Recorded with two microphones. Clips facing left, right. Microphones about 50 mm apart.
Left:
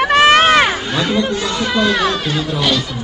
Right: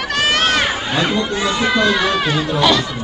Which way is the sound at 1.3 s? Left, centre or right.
Right.